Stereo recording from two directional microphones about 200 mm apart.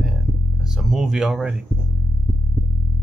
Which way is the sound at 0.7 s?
5° right (ahead or behind).